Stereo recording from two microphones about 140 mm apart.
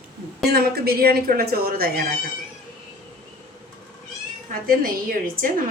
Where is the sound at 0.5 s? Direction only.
90° right.